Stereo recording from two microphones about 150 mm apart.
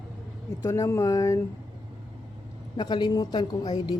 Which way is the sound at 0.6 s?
20° left (ahead or behind).